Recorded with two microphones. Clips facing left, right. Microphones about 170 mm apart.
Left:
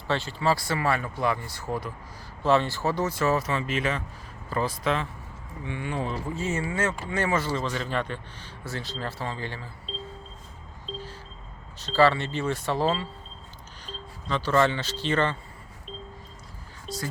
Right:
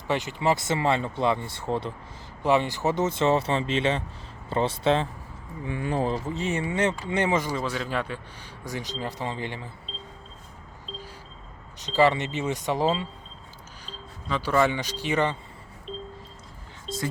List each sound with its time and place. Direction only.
0.1 s speech: 20° right (ahead or behind)
2.4 s speech: 15° right (ahead or behind); by 6.1 s 35° right (ahead or behind)
6.2 s speech: 20° right (ahead or behind)
11.8 s speech: 15° right (ahead or behind)